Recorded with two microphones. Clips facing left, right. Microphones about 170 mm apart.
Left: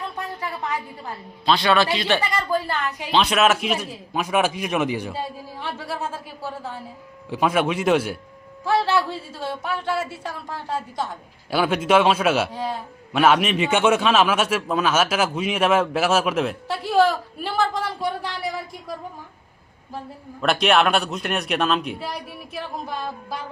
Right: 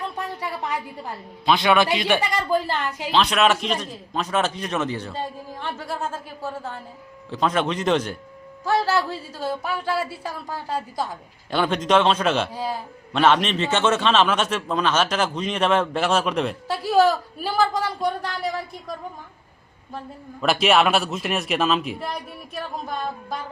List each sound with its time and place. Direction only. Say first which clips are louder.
1.5 s speech: right 1 dB; 15° right (ahead or behind)
3.1 s a man's voice: left 1 dB; centre (ahead or behind)
13.1 s a man's voice: left 1 dB; 10° left (ahead or behind)
20.4 s a man's voice: even; centre (ahead or behind)